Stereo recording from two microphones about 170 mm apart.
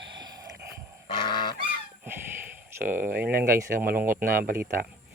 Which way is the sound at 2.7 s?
10° right (ahead or behind).